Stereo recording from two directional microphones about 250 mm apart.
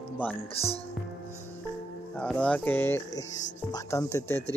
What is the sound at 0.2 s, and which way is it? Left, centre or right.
Speech, centre.